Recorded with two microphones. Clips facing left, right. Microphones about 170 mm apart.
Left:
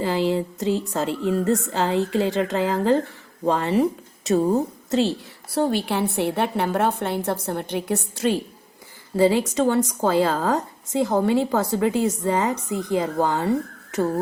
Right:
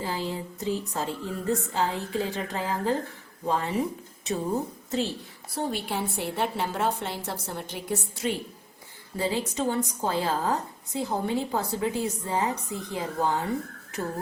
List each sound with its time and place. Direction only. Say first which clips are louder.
0.0 s a woman's voice: left 10 dB; 85° left
9.1 s a woman's voice: left 10 dB; 90° left